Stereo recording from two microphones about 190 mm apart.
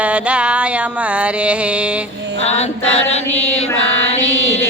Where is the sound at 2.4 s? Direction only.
35° left (ahead or behind).